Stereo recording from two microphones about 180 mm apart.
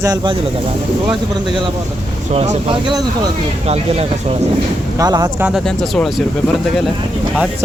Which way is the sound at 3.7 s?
35° right (ahead or behind).